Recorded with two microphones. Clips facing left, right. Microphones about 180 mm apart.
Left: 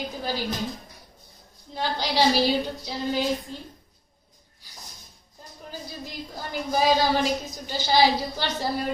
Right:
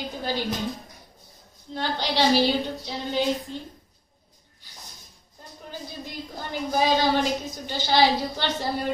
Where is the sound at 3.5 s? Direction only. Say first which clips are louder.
Right 3 dB; 40° left (ahead or behind).